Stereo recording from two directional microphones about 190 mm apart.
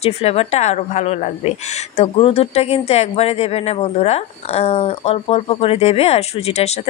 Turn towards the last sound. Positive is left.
turn(degrees=35)  # may be behind; listen again after turning